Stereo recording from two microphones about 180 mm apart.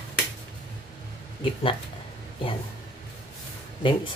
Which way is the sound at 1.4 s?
30° left (ahead or behind).